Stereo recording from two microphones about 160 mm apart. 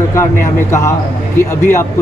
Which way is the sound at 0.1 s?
15° left (ahead or behind).